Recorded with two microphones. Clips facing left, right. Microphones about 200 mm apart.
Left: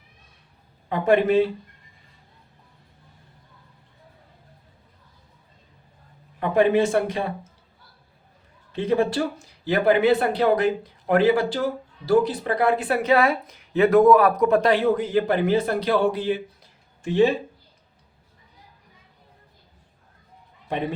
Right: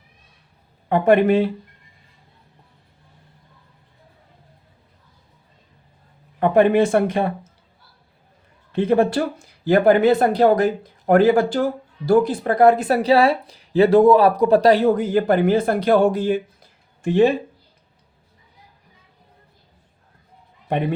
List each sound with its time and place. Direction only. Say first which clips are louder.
0.9 s speech: right 4 dB; 55° right (ahead or behind)
6.4 s speech: right 4 dB; 55° right (ahead or behind)
8.7 s a man's voice: right 4 dB; 55° right (ahead or behind)